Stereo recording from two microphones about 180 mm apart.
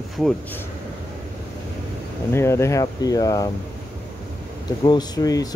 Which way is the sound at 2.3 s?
15° left (ahead or behind).